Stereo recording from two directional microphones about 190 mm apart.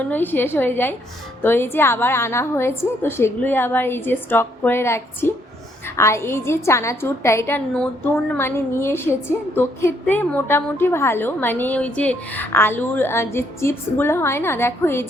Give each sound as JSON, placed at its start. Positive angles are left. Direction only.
{"t": 0.0, "sound": "a woman's voice", "side_deg": 10}